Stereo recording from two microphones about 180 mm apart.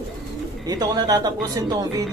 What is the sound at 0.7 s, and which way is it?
Speech, 20° right (ahead or behind).